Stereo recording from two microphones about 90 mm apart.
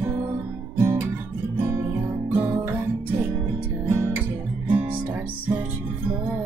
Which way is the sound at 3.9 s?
25° right (ahead or behind).